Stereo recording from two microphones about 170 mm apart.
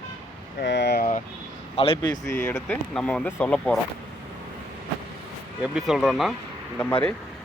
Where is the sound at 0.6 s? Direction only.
90° left; by 1.2 s 60° left (ahead or behind).